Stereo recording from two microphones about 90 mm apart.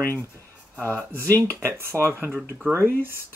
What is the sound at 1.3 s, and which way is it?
Speech, 20° left (ahead or behind).